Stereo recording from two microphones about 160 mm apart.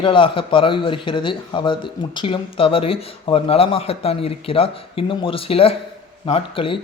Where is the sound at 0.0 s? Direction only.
30° left (ahead or behind).